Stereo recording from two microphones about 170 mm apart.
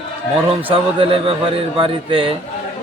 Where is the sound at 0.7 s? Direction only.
30° right (ahead or behind).